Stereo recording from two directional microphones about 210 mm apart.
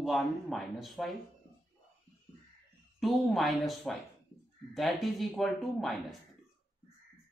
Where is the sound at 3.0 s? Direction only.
Centre (ahead or behind).